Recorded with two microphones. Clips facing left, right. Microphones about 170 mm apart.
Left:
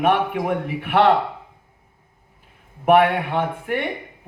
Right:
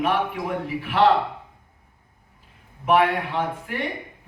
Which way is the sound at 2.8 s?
60° left (ahead or behind).